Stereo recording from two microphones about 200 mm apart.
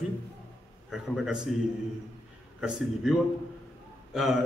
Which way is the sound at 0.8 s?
Centre (ahead or behind).